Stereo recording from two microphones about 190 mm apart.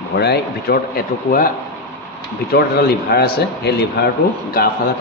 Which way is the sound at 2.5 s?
55° left (ahead or behind).